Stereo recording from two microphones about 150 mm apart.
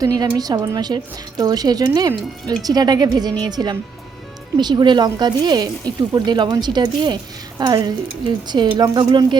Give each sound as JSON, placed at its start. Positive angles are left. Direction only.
{"t": 0.2, "sound": "speech", "side_deg": -25}